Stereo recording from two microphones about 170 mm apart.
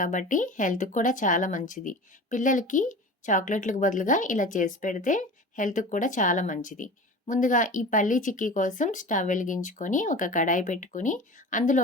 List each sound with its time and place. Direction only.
0.0 s speech: 50° left (ahead or behind)